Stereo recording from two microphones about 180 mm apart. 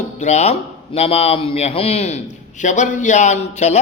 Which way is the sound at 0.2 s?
40° left (ahead or behind).